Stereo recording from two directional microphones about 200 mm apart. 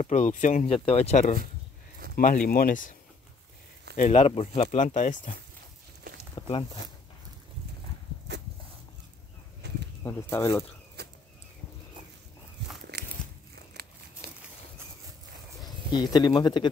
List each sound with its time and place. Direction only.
0.0 s speech: 35° left (ahead or behind)
3.9 s speech: 35° left (ahead or behind)
6.3 s a sound: 30° left (ahead or behind)
9.6 s bird flight: 55° right (ahead or behind)
10.0 s speech: 15° left (ahead or behind)
11.0 s a sound: 55° right (ahead or behind)
12.9 s biting: 55° right (ahead or behind)
13.8 s crumpling: 50° right (ahead or behind)
14.2 s a sound: 50° right (ahead or behind)
15.6 s speech: 20° left (ahead or behind)